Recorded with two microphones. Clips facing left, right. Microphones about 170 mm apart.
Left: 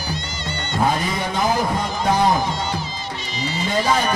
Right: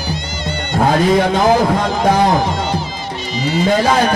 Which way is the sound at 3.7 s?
90° right.